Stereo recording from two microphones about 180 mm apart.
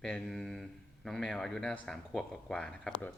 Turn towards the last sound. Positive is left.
turn(degrees=5)  # may be behind; listen again after turning